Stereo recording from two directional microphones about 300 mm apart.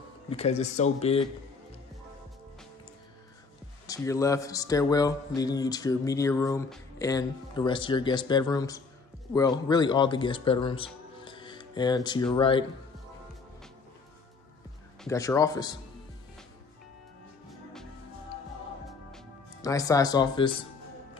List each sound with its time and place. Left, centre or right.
0.3 s speech: left
3.8 s speech: centre
15.0 s speech: centre
19.6 s speech: centre